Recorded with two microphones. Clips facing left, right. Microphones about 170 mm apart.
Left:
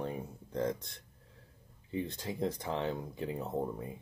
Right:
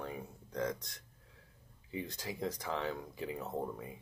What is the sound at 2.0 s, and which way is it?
Speech, 20° left (ahead or behind).